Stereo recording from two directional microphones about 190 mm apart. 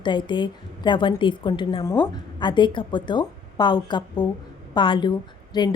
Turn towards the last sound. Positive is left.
turn(degrees=20)  # may be behind; listen again after turning